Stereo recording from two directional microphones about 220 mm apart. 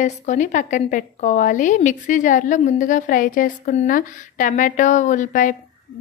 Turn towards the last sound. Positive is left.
turn(degrees=35)  # may be behind; listen again after turning